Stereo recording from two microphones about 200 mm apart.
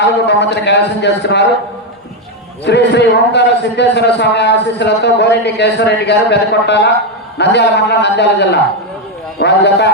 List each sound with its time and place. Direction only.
0.3 s a man's voice: 60° left (ahead or behind)
2.6 s a man's voice: 60° left (ahead or behind)